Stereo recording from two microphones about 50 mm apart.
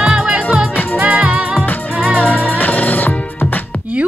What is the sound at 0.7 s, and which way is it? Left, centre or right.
Music, left.